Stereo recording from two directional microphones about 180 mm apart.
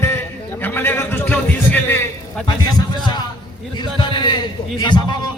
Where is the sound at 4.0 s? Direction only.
25° left (ahead or behind).